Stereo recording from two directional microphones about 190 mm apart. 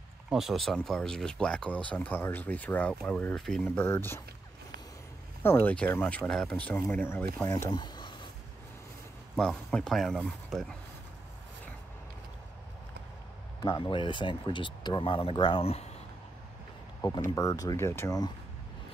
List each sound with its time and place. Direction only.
0.3 s speech: centre (ahead or behind)
5.4 s speech: 10° left (ahead or behind)
7.4 s a sound: 20° left (ahead or behind)
9.4 s speech: 5° left (ahead or behind)
13.6 s speech: 25° left (ahead or behind)
17.0 s speech: 20° left (ahead or behind)